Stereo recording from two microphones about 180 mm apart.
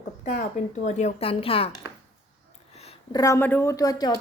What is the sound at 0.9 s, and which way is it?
Speech, 40° left (ahead or behind).